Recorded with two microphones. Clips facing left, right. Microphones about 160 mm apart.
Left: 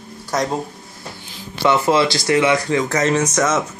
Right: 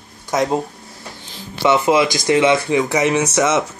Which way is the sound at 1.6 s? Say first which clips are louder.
Right 1 dB; 15° right (ahead or behind).